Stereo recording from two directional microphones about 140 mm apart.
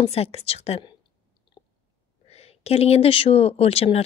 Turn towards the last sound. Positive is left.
turn(degrees=45)  # may be behind; listen again after turning